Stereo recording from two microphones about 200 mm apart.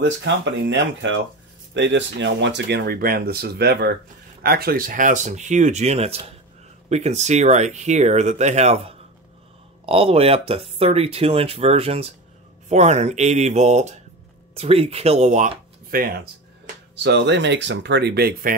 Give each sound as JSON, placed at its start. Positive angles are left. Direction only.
{"t": 0.0, "sound": "speech", "side_deg": -65}
{"t": 16.9, "sound": "speech", "side_deg": -60}